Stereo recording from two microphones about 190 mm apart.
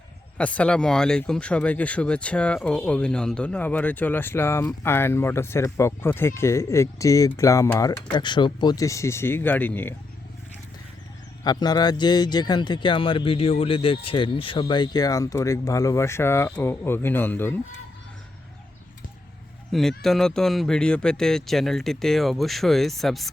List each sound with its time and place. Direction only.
0.3 s speech: 5° left (ahead or behind)
11.4 s speech: 20° left (ahead or behind)
19.7 s speech: centre (ahead or behind)